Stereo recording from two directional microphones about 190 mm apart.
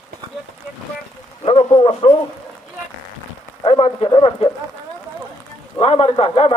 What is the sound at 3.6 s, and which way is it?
Speech, 30° left (ahead or behind).